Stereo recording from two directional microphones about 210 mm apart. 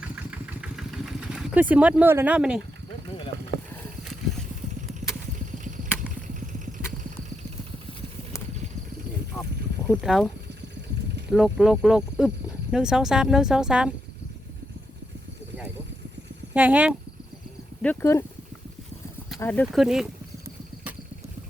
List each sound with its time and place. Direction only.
0.0 s vehicle: 5° right (ahead or behind)
1.7 s speech: 5° right (ahead or behind)
9.8 s speech: 5° right (ahead or behind)
16.6 s speech: 5° right (ahead or behind)
17.8 s speech: 10° left (ahead or behind)
19.4 s speech: 5° left (ahead or behind)